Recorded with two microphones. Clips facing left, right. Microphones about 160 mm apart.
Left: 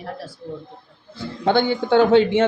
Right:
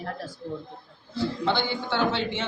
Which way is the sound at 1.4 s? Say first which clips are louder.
Left 12 dB; 50° left (ahead or behind).